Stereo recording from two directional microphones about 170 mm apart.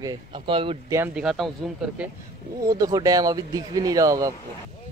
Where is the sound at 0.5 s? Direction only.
30° right (ahead or behind).